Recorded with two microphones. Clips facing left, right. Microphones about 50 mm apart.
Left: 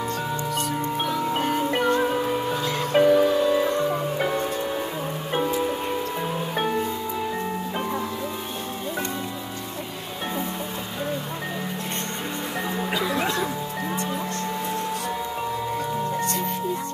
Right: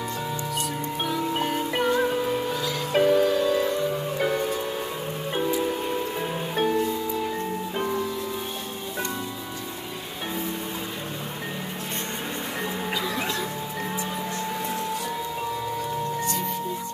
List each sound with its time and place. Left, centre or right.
0.6 s music: centre
6.5 s music: centre
12.9 s music: centre
16.2 s music: left